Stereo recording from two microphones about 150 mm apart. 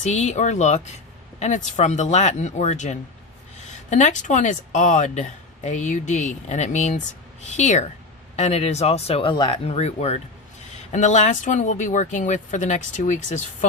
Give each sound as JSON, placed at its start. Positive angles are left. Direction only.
{"t": 0.0, "sound": "speech", "side_deg": 50}